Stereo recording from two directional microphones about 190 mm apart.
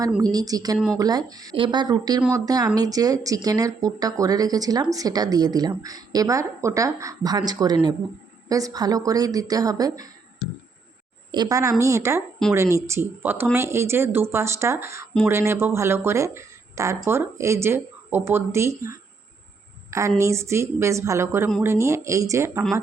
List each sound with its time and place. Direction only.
0.2 s speech: 20° right (ahead or behind)
11.3 s a woman's voice: 20° right (ahead or behind)
19.9 s a woman's voice: 15° right (ahead or behind)